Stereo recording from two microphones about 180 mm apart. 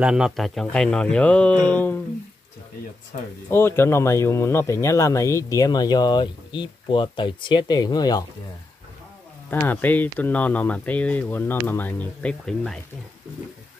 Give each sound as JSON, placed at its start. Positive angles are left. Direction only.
{"t": 0.0, "sound": "speech", "side_deg": -5}
{"t": 3.4, "sound": "speech", "side_deg": 15}
{"t": 9.5, "sound": "speech", "side_deg": 10}